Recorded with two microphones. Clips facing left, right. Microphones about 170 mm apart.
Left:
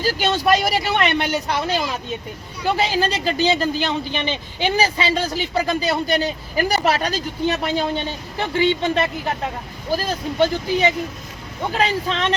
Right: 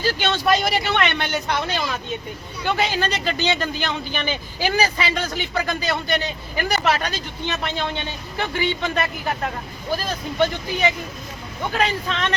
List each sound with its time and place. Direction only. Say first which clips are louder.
0.0 s speech: left 2 dB; 40° left (ahead or behind)
0.3 s speech: left 2 dB; 10° left (ahead or behind)
0.9 s speech: left 3 dB; 35° left (ahead or behind)
10.4 s speech: left 3 dB; 30° left (ahead or behind)